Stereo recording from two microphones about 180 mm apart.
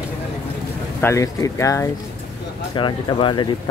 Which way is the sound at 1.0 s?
15° left (ahead or behind).